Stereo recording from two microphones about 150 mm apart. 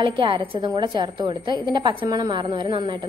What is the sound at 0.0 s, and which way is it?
A woman's voice, 35° right (ahead or behind).